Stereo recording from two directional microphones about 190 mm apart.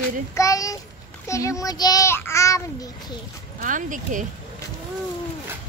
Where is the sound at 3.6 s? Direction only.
45° right (ahead or behind).